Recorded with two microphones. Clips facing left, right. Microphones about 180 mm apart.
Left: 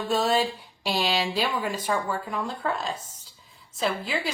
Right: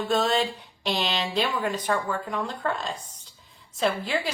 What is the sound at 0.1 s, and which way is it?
A woman's voice, 5° left (ahead or behind).